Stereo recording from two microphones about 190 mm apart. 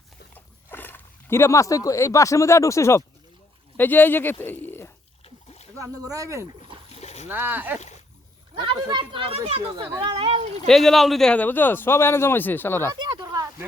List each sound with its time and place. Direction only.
0.3 s speech: 10° left (ahead or behind)
5.2 s splash: 35° left (ahead or behind)
5.7 s speech: 20° right (ahead or behind)
6.9 s a sound: 35° left (ahead or behind)
7.3 s speech: 10° right (ahead or behind)
8.5 s speech: 25° right (ahead or behind)
10.7 s a man's voice: centre (ahead or behind)
12.9 s a sound: 25° right (ahead or behind)